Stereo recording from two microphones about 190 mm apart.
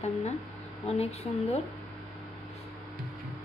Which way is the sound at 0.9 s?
35° left (ahead or behind).